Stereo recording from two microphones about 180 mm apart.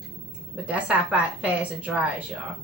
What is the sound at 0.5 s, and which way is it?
A woman's voice, 5° right (ahead or behind).